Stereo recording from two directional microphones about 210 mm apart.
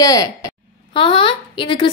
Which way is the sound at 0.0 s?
15° left (ahead or behind).